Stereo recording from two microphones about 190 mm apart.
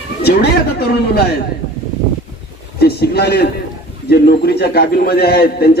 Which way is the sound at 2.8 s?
55° left (ahead or behind).